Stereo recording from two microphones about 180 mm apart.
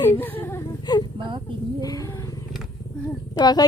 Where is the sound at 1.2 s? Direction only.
25° right (ahead or behind).